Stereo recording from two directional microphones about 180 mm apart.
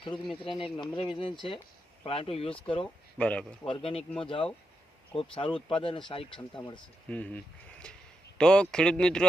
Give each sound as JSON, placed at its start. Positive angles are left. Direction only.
{"t": 0.3, "sound": "speech", "side_deg": 30}
{"t": 2.8, "sound": "speech", "side_deg": 5}
{"t": 3.7, "sound": "speech", "side_deg": 30}
{"t": 7.1, "sound": "speech", "side_deg": 5}